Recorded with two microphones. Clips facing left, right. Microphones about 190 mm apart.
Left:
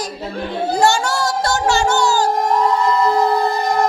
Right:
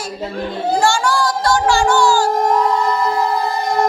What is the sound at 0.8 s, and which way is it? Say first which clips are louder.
Music: left 1 dB; 20° left (ahead or behind).